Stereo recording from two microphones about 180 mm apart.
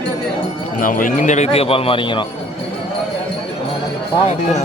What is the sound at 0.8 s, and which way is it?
Speech, 50° left (ahead or behind).